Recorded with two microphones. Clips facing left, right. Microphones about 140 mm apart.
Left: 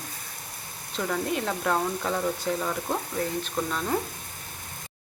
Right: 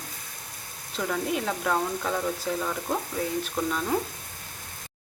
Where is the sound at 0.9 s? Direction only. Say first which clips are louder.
Even; centre (ahead or behind).